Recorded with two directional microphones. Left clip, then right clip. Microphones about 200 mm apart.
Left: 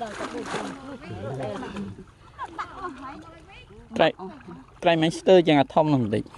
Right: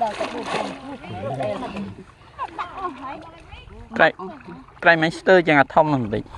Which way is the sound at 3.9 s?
25° left (ahead or behind).